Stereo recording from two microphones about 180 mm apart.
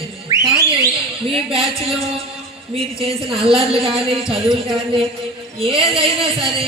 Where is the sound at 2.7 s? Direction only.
30° right (ahead or behind).